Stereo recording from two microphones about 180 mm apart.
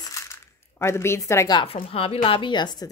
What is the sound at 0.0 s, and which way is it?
Speech, 15° left (ahead or behind).